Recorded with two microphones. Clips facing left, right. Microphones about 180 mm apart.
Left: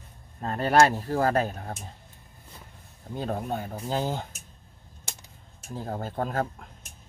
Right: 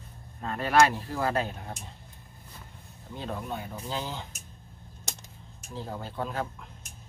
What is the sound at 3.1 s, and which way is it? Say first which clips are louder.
Speech: left 5 dB; 45° left (ahead or behind).